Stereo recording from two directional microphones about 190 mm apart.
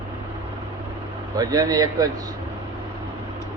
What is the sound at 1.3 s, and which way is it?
Speech, 20° right (ahead or behind).